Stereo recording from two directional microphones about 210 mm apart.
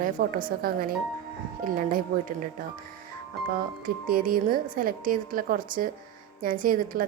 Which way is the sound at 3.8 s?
45° right (ahead or behind).